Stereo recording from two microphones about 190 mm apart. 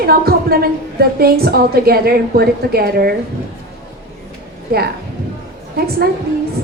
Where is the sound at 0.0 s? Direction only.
55° right (ahead or behind).